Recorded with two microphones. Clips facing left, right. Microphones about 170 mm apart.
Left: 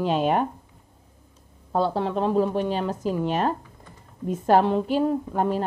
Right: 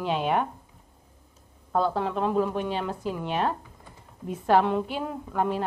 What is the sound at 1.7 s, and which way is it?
A woman's voice, 30° left (ahead or behind).